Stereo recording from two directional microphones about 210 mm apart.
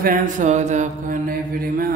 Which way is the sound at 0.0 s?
40° right (ahead or behind).